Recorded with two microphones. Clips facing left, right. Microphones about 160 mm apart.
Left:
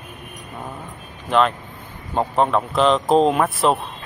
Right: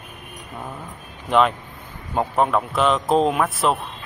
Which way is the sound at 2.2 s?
Centre (ahead or behind).